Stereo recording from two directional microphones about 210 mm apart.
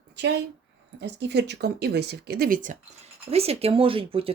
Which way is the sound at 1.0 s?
55° right (ahead or behind).